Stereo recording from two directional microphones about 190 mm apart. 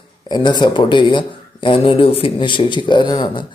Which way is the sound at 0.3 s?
20° left (ahead or behind).